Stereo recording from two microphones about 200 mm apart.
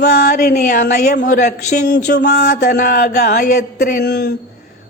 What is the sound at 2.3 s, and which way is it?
Speech, 40° left (ahead or behind).